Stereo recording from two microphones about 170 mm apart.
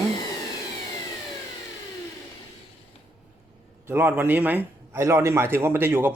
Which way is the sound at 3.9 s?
15° right (ahead or behind).